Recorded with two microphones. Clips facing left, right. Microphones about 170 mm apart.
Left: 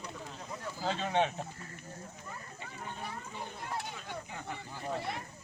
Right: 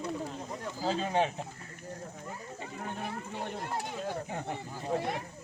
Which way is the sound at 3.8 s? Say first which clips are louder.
Right 7 dB; 40° right (ahead or behind).